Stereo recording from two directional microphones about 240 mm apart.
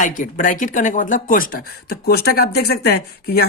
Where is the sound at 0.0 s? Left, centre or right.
Left.